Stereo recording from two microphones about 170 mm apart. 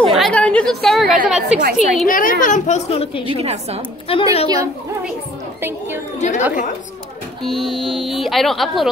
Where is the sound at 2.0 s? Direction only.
55° left (ahead or behind); by 3.3 s 35° left (ahead or behind).